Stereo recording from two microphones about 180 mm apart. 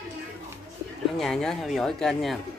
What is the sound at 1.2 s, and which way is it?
Speech, 5° left (ahead or behind).